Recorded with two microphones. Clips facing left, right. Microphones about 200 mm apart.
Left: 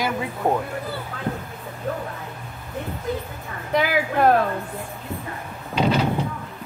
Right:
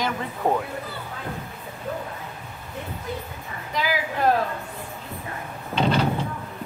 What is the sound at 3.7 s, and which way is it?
Speech, 60° left (ahead or behind).